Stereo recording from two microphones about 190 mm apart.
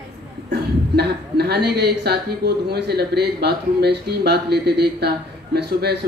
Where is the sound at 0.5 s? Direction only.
60° right (ahead or behind).